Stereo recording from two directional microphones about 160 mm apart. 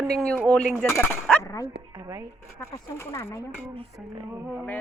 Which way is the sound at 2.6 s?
15° left (ahead or behind).